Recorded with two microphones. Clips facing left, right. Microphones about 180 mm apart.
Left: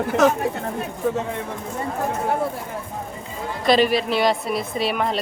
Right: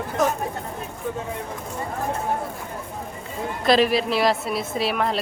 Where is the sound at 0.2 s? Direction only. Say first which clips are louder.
Left 5 dB; 80° left.